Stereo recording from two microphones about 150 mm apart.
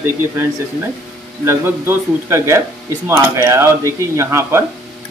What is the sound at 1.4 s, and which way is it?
Speech, 15° right (ahead or behind).